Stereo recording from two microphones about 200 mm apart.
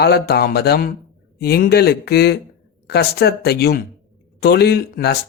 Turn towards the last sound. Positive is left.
turn(degrees=50)  # may be behind; listen again after turning